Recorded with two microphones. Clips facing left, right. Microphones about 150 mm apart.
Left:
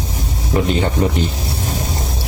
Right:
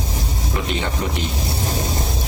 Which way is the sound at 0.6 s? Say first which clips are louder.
Left 5 dB; 40° left (ahead or behind).